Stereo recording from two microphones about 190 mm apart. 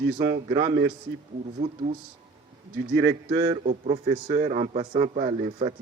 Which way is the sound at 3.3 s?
20° right (ahead or behind).